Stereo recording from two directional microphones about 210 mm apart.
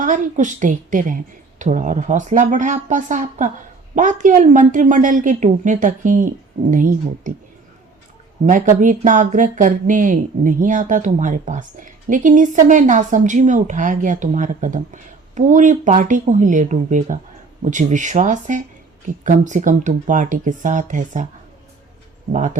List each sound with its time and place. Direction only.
0.0 s speech: 40° right (ahead or behind)
8.4 s speech: 35° right (ahead or behind)
22.3 s speech: 35° right (ahead or behind)